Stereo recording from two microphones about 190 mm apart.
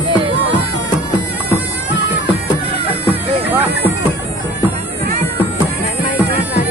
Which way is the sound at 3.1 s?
10° right (ahead or behind).